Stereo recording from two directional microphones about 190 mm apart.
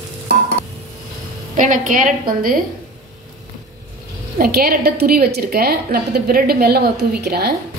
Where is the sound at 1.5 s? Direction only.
45° right (ahead or behind).